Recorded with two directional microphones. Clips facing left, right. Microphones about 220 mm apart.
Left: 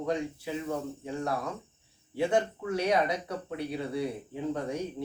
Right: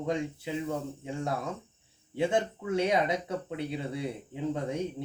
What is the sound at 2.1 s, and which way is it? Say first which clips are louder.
Speech: left 1 dB; 20° right (ahead or behind).